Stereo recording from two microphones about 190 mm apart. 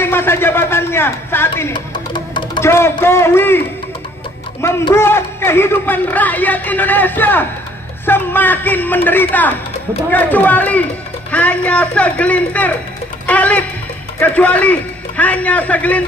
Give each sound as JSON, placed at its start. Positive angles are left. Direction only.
{"t": 0.0, "sound": "speech", "side_deg": 10}
{"t": 1.7, "sound": "music", "side_deg": 25}
{"t": 2.7, "sound": "speech", "side_deg": 15}